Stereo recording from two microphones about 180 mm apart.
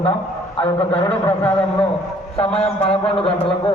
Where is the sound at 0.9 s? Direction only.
10° left (ahead or behind).